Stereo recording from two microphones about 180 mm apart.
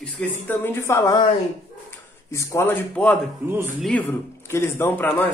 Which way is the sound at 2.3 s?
15° left (ahead or behind).